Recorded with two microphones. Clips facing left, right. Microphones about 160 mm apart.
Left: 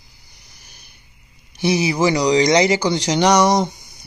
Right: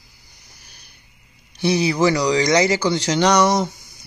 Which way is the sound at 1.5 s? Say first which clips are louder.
Even; 10° left (ahead or behind).